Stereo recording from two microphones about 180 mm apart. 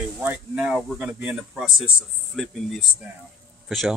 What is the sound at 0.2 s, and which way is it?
Speech, 10° right (ahead or behind).